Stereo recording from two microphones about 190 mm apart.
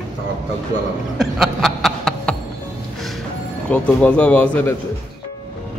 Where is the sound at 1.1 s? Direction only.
Centre (ahead or behind).